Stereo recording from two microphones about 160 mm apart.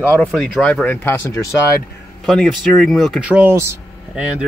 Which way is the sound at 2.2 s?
5° left (ahead or behind).